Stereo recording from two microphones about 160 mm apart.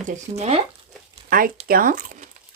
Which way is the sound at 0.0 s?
40° right (ahead or behind).